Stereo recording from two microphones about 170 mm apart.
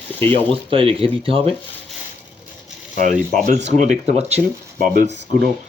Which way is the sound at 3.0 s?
50° right (ahead or behind).